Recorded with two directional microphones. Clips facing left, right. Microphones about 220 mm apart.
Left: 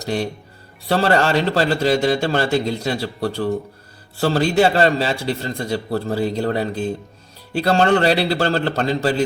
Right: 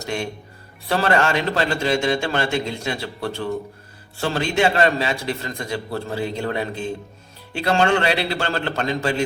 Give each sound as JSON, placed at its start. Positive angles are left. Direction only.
{"t": 0.0, "sound": "a man's voice", "side_deg": 35}